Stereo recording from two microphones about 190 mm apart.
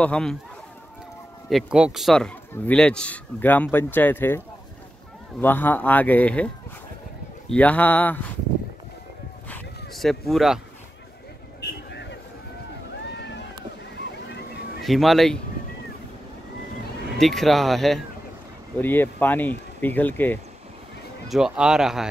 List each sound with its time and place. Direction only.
0.0 s speech: 5° left (ahead or behind)
1.5 s speech: 5° right (ahead or behind)
5.4 s speech: 10° left (ahead or behind)
9.5 s a sound: centre (ahead or behind)
11.9 s vehicle: 65° left (ahead or behind)
13.2 s boat: 65° left (ahead or behind)
14.8 s speech: centre (ahead or behind)
17.2 s speech: centre (ahead or behind)
21.3 s speech: 5° right (ahead or behind)